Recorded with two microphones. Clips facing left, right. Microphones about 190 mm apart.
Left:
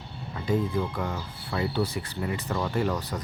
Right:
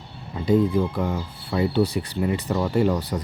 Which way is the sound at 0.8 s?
15° right (ahead or behind).